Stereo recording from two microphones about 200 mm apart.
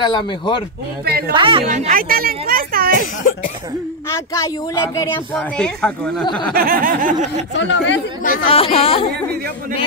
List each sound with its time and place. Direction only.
0.0 s speech: 25° left (ahead or behind)
1.0 s speech: 50° right (ahead or behind)
1.3 s a woman's voice: 25° right (ahead or behind)
1.7 s speech: 40° right (ahead or behind)
3.0 s cough: 40° left (ahead or behind)
4.1 s speech: 15° left (ahead or behind)
6.5 s speech: 45° right (ahead or behind)
7.5 s speech: 65° left (ahead or behind)
8.2 s cough: 40° left (ahead or behind)
8.5 s speech: 30° left (ahead or behind)
9.1 s speech: 55° right (ahead or behind)